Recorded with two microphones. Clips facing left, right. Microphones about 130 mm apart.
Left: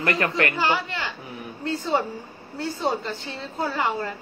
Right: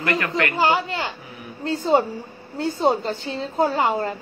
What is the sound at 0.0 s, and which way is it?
Speech, 35° left (ahead or behind).